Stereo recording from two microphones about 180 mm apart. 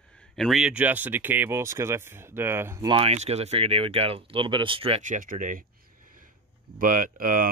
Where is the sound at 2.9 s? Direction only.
35° right (ahead or behind).